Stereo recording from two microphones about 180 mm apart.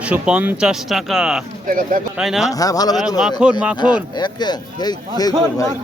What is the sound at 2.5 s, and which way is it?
Speech, 20° left (ahead or behind).